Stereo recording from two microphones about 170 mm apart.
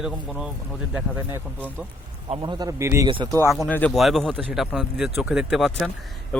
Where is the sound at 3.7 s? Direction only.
10° left (ahead or behind).